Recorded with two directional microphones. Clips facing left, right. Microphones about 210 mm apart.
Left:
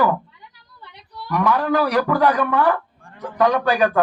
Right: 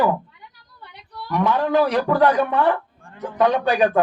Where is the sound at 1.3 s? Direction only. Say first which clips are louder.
Even; 25° right (ahead or behind).